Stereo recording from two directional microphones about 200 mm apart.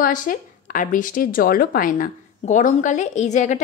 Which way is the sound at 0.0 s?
45° left (ahead or behind).